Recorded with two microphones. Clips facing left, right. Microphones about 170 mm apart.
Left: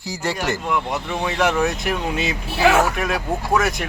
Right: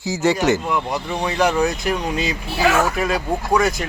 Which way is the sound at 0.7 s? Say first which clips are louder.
Right 1 dB; centre (ahead or behind).